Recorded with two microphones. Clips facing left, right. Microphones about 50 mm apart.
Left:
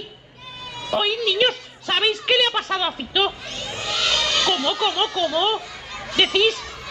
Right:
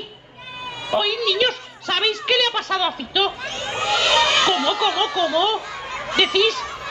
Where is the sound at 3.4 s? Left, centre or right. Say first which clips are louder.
Right 6 dB; right.